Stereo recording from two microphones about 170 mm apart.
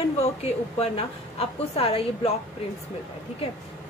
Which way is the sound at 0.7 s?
35° left (ahead or behind).